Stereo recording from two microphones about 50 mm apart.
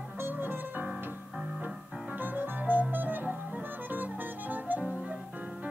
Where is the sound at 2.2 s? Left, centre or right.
Right.